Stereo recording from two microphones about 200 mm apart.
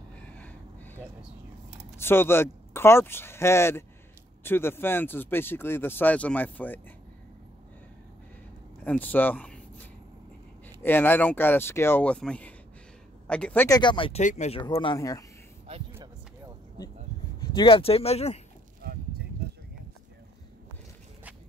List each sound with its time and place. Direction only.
0.3 s a sound: 10° left (ahead or behind)
2.0 s speech: 10° left (ahead or behind)
8.8 s speech: 10° left (ahead or behind)
13.7 s speech: 20° left (ahead or behind)
14.6 s speech: 25° left (ahead or behind)
17.4 s speech: 25° left (ahead or behind)
18.8 s a sound: 50° right (ahead or behind)